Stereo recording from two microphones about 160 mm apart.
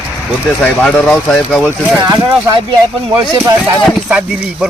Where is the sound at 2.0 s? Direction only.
25° right (ahead or behind).